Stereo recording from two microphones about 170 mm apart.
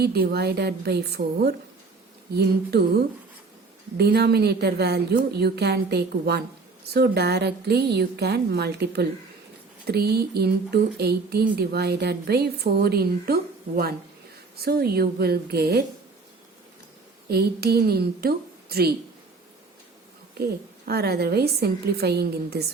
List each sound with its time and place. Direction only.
0.0 s a woman's voice: 65° right (ahead or behind)
17.2 s a woman's voice: 70° right (ahead or behind)
20.4 s a woman's voice: 65° right (ahead or behind)